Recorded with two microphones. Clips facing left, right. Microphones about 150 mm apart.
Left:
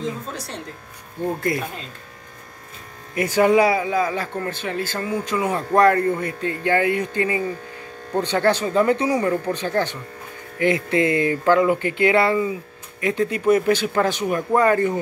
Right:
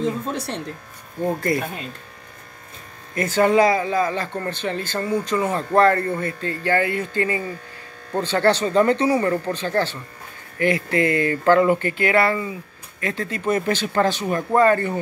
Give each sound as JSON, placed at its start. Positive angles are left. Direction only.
{"t": 1.5, "sound": "speech", "side_deg": 0}
{"t": 3.2, "sound": "a man's voice", "side_deg": 10}
{"t": 11.9, "sound": "a man's voice", "side_deg": 20}